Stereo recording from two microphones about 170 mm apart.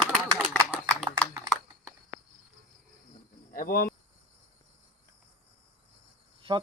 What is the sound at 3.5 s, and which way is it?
Cricket, 60° left (ahead or behind).